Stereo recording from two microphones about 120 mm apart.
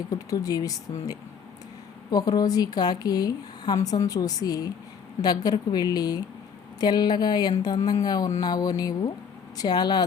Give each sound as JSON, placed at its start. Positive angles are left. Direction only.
{"t": 0.1, "sound": "speech", "side_deg": 30}
{"t": 2.0, "sound": "a woman's voice", "side_deg": 30}